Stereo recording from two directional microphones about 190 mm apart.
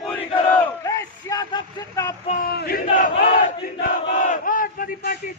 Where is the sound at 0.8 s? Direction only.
20° left (ahead or behind).